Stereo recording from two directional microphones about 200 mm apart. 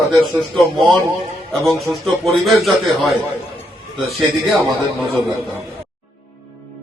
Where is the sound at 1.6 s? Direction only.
Centre (ahead or behind).